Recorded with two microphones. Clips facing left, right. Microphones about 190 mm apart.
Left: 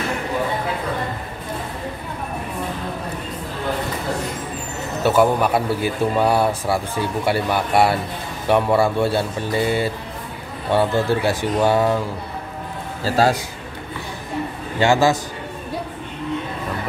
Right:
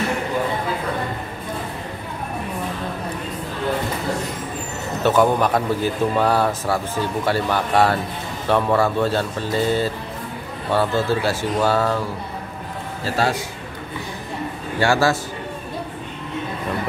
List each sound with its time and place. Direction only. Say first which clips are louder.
5.0 s speech: even; 10° left (ahead or behind)
14.8 s speech: left 2 dB; 20° left (ahead or behind)